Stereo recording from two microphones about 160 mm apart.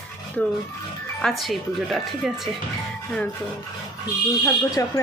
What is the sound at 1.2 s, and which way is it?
A woman's voice, centre (ahead or behind).